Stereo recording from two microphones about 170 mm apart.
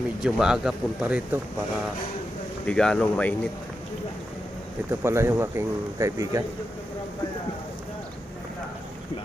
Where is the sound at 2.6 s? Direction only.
5° left (ahead or behind).